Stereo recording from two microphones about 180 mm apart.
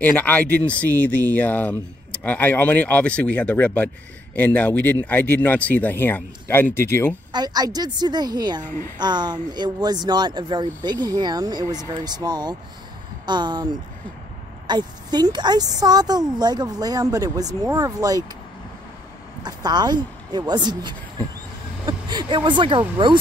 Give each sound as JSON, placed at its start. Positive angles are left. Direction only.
{"t": 0.0, "sound": "speech", "side_deg": 10}
{"t": 7.3, "sound": "a woman's voice", "side_deg": -20}
{"t": 19.4, "sound": "a woman's voice", "side_deg": -25}